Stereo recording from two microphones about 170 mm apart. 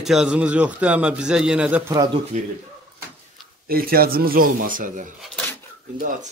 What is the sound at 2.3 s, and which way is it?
Speech, 45° right (ahead or behind).